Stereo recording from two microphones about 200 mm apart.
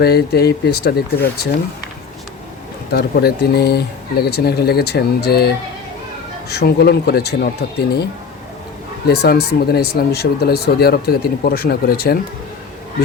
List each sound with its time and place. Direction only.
0.0 s speech: 50° left (ahead or behind)
2.9 s speech: 55° left (ahead or behind)
9.0 s speech: 55° left (ahead or behind)